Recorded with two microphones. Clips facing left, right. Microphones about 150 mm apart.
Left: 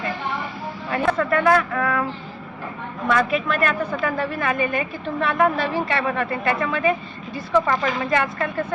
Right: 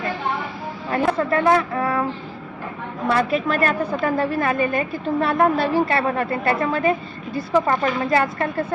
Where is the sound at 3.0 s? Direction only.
35° right (ahead or behind).